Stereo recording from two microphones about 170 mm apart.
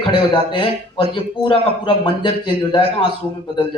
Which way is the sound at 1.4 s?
30° left (ahead or behind).